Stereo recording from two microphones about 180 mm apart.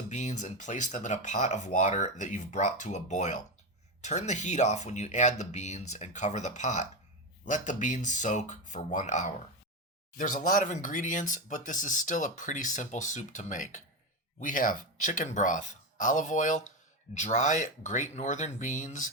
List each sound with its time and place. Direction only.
0.1 s speech: 40° left (ahead or behind)